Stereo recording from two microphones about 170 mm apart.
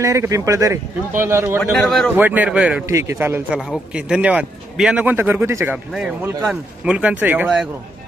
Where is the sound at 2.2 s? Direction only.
10° right (ahead or behind).